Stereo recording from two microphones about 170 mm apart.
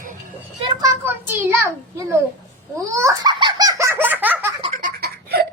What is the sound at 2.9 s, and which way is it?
Baby laughter, 20° right (ahead or behind).